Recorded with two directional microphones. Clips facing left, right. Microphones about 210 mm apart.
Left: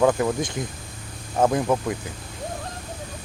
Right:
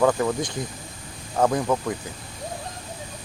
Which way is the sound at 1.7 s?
10° left (ahead or behind).